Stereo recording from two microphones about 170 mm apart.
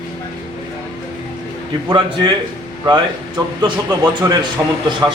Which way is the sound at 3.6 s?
20° right (ahead or behind).